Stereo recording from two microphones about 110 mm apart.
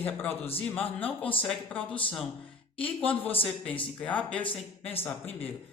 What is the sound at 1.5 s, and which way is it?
Speech, 10° left (ahead or behind).